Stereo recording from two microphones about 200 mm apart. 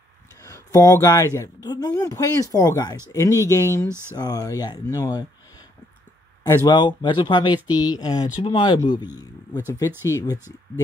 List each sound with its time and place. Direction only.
0.4 s speech: 15° left (ahead or behind)
6.4 s speech: 20° left (ahead or behind)